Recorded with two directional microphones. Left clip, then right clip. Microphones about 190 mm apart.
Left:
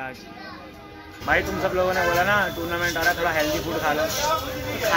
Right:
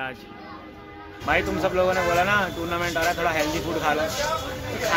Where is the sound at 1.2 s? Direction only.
5° right (ahead or behind).